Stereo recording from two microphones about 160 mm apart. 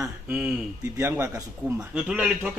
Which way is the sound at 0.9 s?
15° right (ahead or behind).